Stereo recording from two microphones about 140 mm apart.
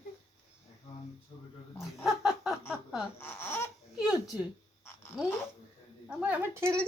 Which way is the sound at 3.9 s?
5° right (ahead or behind).